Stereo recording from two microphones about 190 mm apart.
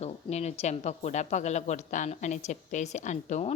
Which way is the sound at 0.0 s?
35° left (ahead or behind).